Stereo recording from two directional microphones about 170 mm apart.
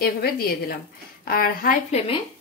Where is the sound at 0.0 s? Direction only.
60° left (ahead or behind).